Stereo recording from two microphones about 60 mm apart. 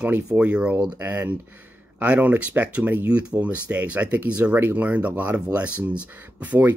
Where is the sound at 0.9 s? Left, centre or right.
Right.